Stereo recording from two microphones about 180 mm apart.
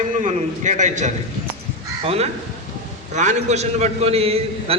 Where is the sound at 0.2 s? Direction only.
40° right (ahead or behind).